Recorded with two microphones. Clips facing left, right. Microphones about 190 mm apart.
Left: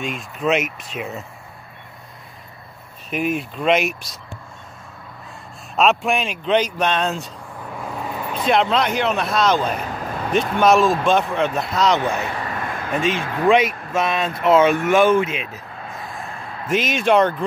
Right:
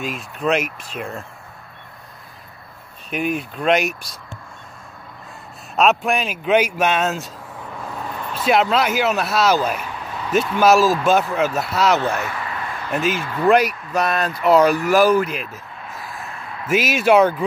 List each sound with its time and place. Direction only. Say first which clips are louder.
0.0 s speech: even; centre (ahead or behind)
3.1 s speech: even; centre (ahead or behind)
5.8 s speech: even; centre (ahead or behind)
7.7 s vehicle: left 2 dB; 10° left (ahead or behind)
8.5 s speech: right 1 dB; 5° right (ahead or behind)
9.8 s a sound: left 3 dB; 40° left (ahead or behind)
10.6 s speech: right 1 dB; 5° right (ahead or behind)
12.0 s speech: even; 15° left (ahead or behind)
12.3 s a sound: left 2 dB; 30° left (ahead or behind)
12.9 s speech: even; centre (ahead or behind)
16.6 s speech: right 2 dB; 5° right (ahead or behind)